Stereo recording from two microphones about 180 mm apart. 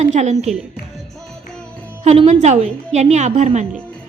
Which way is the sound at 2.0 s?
35° right (ahead or behind).